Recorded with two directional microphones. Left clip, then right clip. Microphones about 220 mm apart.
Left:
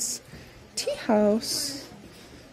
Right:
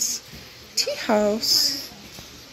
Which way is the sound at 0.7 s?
25° left (ahead or behind).